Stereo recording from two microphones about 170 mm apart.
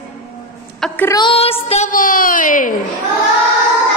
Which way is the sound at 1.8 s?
55° left (ahead or behind).